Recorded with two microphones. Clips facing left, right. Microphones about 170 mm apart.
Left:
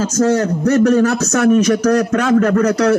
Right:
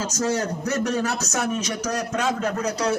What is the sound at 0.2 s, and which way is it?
A man's voice, 60° left (ahead or behind).